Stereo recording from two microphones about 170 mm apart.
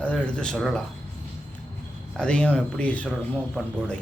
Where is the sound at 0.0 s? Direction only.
5° left (ahead or behind).